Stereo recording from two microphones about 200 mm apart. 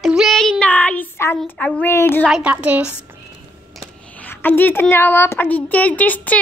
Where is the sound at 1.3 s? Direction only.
10° left (ahead or behind).